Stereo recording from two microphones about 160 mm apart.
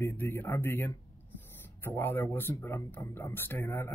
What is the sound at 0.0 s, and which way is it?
Speech, 15° left (ahead or behind).